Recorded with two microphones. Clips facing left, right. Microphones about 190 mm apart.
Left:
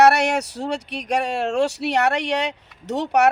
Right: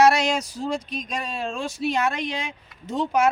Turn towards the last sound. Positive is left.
turn(degrees=70)  # may be behind; listen again after turning